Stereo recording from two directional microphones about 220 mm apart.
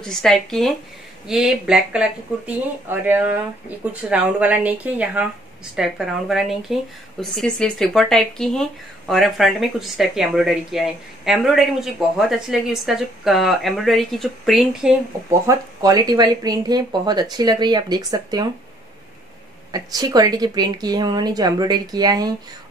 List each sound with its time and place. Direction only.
0.0 s speech: centre (ahead or behind)
15.4 s speech: 15° right (ahead or behind)
19.7 s speech: 15° right (ahead or behind)